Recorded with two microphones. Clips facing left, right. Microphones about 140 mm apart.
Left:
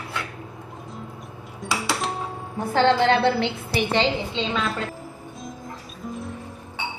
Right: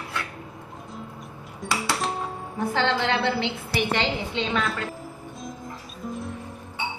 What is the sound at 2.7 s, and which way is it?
Speech, 45° left (ahead or behind).